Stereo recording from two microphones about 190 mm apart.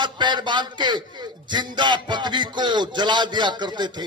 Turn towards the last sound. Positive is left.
turn(degrees=-25)  # may be behind; listen again after turning